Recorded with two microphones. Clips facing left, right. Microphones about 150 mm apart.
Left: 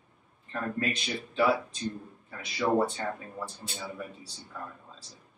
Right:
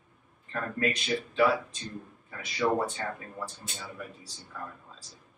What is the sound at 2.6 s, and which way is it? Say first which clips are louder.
Speech: left 1 dB; centre (ahead or behind).